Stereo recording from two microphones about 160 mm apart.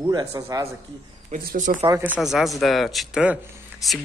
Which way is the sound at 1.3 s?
60° right (ahead or behind).